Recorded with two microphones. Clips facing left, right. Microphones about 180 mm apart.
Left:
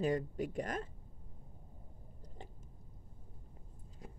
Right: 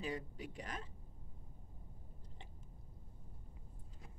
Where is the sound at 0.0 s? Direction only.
50° left (ahead or behind).